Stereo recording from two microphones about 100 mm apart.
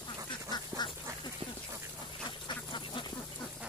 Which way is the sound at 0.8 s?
45° left (ahead or behind).